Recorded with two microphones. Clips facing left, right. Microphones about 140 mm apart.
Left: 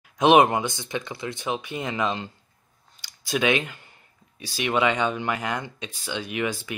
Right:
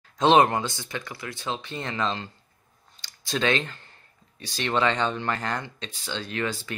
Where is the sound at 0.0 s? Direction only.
15° left (ahead or behind).